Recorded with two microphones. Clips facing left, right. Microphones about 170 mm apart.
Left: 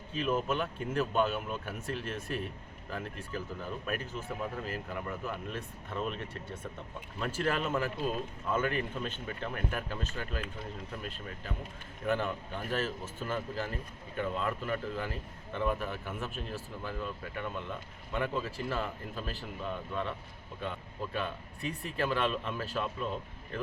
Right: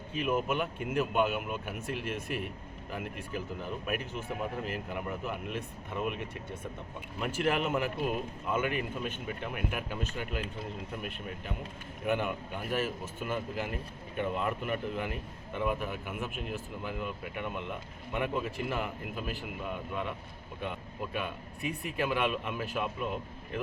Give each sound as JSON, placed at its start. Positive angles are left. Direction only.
{"t": 0.1, "sound": "a man's voice", "side_deg": -15}